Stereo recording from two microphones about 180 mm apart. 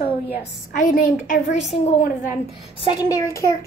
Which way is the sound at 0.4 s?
50° left (ahead or behind).